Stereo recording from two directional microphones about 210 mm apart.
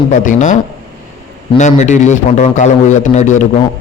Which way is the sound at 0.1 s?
35° left (ahead or behind).